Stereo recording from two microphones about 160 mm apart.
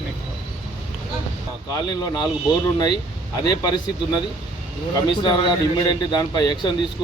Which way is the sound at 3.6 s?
30° left (ahead or behind).